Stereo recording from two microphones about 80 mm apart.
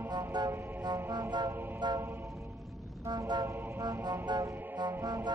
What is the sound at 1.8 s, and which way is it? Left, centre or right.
Speech, right.